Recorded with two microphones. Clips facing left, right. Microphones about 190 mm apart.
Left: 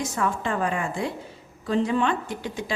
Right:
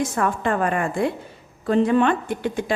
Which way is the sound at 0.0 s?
55° right (ahead or behind).